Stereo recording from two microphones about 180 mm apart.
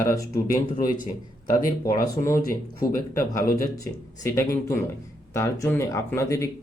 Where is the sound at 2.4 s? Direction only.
50° left (ahead or behind).